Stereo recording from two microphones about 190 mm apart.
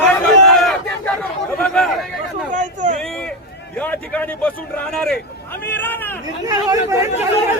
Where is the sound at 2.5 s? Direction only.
40° right (ahead or behind).